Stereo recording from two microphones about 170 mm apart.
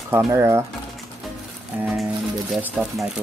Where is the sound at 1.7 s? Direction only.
10° right (ahead or behind).